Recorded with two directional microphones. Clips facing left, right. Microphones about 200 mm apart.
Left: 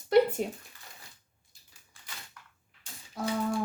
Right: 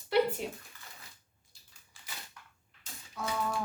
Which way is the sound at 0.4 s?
45° left (ahead or behind).